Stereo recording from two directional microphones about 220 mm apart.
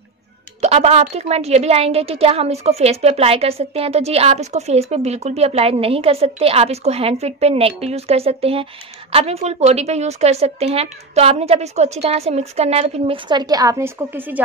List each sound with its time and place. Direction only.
0.6 s speech: 30° right (ahead or behind); by 14.4 s 10° right (ahead or behind)